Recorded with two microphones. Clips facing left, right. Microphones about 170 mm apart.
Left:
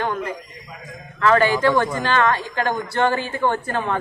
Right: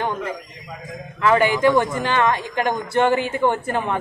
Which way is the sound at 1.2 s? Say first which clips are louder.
Even; 15° right (ahead or behind).